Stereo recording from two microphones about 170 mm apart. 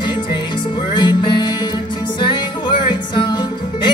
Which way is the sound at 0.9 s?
25° left (ahead or behind).